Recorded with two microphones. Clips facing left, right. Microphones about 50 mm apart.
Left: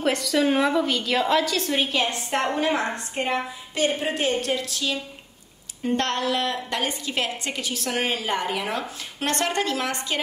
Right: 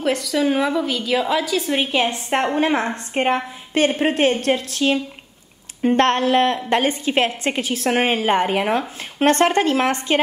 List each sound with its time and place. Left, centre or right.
0.0 s a woman's voice: centre; by 10.2 s right